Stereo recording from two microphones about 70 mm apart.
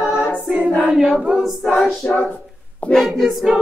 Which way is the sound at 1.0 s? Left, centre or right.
Centre.